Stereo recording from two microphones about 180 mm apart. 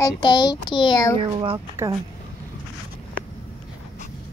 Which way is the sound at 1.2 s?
30° right (ahead or behind).